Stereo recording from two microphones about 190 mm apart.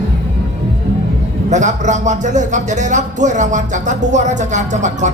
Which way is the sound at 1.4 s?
40° right (ahead or behind).